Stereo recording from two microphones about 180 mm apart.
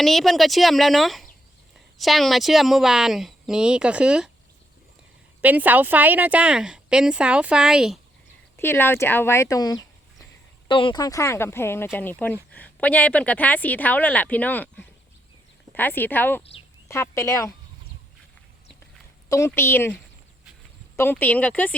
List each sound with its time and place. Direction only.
0.0 s speech: centre (ahead or behind)
5.4 s speech: 10° right (ahead or behind)
8.5 s speech: 15° left (ahead or behind)
16.4 s speech: 30° left (ahead or behind)
16.9 s speech: 15° left (ahead or behind)
19.3 s speech: 15° left (ahead or behind)